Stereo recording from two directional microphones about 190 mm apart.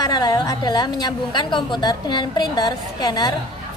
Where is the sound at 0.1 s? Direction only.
20° left (ahead or behind).